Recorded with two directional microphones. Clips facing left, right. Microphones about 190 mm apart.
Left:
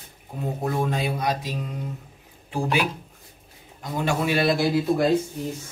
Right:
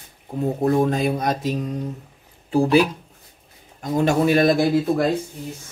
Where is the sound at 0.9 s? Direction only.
45° right (ahead or behind).